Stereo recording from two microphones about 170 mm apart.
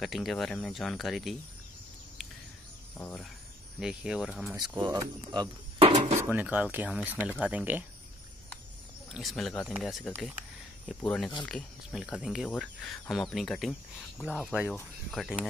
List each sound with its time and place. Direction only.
0.0 s speech: centre (ahead or behind)
3.8 s speech: 5° right (ahead or behind)
4.6 s speech: 25° right (ahead or behind)
6.2 s speech: 10° right (ahead or behind)
9.1 s speech: centre (ahead or behind)